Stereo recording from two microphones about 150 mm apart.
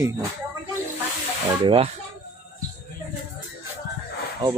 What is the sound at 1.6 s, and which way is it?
Speech, 35° right (ahead or behind).